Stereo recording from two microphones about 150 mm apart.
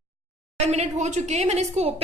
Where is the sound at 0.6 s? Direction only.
45° right (ahead or behind).